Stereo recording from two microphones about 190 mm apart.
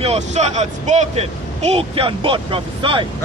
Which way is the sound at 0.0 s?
35° right (ahead or behind).